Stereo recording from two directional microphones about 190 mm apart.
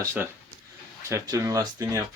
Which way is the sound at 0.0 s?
15° right (ahead or behind).